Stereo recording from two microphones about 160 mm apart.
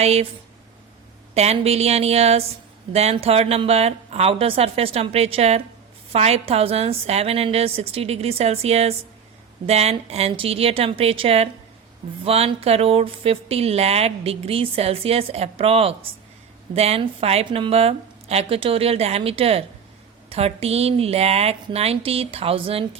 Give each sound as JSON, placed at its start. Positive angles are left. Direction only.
{"t": 0.0, "sound": "speech", "side_deg": -40}
{"t": 1.3, "sound": "speech", "side_deg": -40}